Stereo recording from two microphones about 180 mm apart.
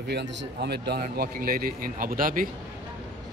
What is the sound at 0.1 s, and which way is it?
Speech, 65° right (ahead or behind).